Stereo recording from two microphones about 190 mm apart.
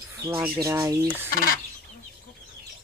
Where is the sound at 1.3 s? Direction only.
50° left (ahead or behind).